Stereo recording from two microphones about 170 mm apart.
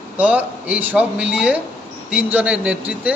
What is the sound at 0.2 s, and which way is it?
A man's voice, 10° right (ahead or behind).